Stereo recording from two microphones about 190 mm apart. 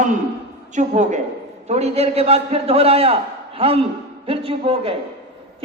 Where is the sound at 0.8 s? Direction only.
40° right (ahead or behind).